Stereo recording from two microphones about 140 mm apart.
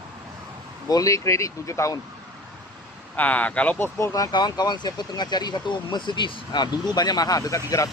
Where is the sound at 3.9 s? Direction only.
20° left (ahead or behind).